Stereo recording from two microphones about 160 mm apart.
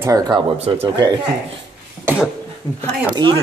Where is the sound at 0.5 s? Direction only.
40° right (ahead or behind).